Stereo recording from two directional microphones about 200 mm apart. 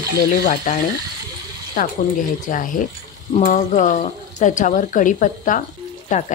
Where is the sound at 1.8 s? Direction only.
40° left (ahead or behind).